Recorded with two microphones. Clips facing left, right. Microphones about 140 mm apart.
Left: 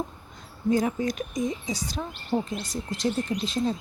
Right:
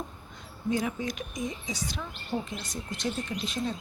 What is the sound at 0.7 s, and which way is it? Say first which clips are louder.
Speech: left 6 dB; 40° left (ahead or behind).